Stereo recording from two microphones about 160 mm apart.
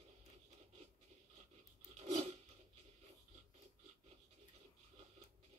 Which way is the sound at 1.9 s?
40° right (ahead or behind).